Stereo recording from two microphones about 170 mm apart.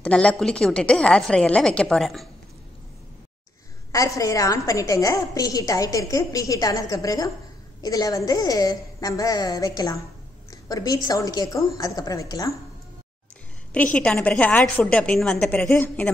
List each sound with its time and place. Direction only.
0.0 s speech: 5° left (ahead or behind)
3.9 s a woman's voice: 20° left (ahead or behind)
13.7 s a woman's voice: 10° left (ahead or behind)